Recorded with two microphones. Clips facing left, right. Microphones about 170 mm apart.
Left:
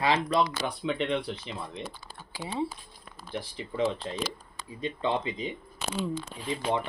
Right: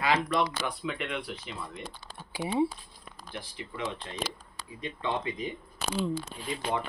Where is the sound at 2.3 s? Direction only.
15° right (ahead or behind).